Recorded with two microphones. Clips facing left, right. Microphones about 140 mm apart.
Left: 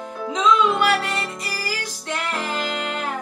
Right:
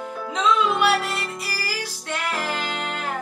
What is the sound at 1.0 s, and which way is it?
Music, 5° right (ahead or behind).